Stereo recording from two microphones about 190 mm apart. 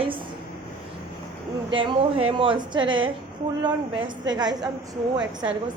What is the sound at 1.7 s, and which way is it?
A woman's voice, 25° right (ahead or behind).